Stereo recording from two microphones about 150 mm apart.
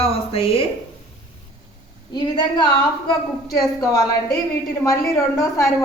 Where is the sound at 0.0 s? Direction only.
40° left (ahead or behind).